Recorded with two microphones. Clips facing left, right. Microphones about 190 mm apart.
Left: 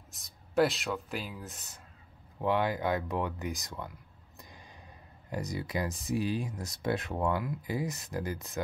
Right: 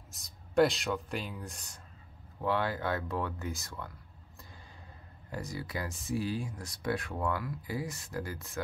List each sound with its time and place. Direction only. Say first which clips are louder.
0.1 s speech: right 1 dB; centre (ahead or behind)
2.4 s speech: left 3 dB; 15° left (ahead or behind)
5.3 s speech: left 4 dB; 20° left (ahead or behind)